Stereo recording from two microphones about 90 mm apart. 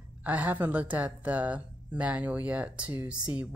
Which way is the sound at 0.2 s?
15° right (ahead or behind).